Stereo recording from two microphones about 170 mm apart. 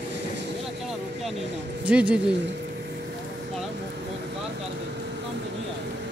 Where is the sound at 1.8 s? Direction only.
5° right (ahead or behind).